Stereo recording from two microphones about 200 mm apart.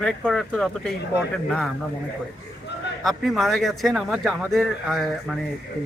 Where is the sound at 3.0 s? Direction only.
Centre (ahead or behind).